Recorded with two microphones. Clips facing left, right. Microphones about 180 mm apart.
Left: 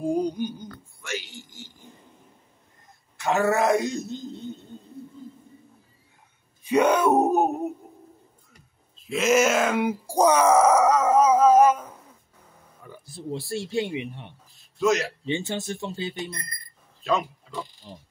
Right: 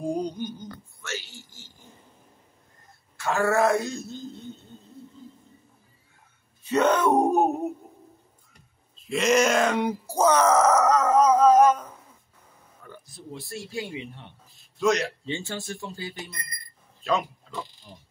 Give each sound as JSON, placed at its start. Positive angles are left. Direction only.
{"t": 0.0, "sound": "a sound", "side_deg": 5}
{"t": 3.2, "sound": "speech", "side_deg": 20}
{"t": 6.6, "sound": "a sound", "side_deg": 10}
{"t": 8.5, "sound": "groan", "side_deg": 0}
{"t": 13.0, "sound": "speech", "side_deg": 30}
{"t": 14.8, "sound": "speech", "side_deg": 0}
{"t": 15.2, "sound": "speech", "side_deg": 20}
{"t": 17.9, "sound": "speech", "side_deg": 30}